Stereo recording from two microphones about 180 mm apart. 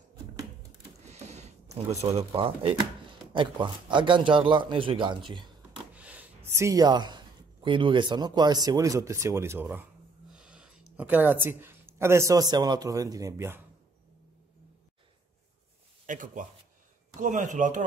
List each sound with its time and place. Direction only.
1.1 s a sound: 40° right (ahead or behind)
2.1 s a man's voice: 30° right (ahead or behind)
5.9 s speech: 10° right (ahead or behind)
16.1 s speech: 45° right (ahead or behind)